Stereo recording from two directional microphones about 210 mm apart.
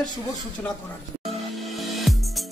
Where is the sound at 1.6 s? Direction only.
Centre (ahead or behind).